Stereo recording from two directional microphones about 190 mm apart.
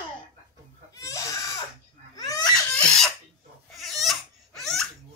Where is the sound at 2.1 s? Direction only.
20° left (ahead or behind).